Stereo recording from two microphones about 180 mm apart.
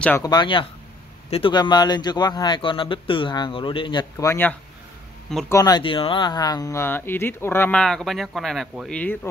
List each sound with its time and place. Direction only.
0.2 s speech: 25° left (ahead or behind)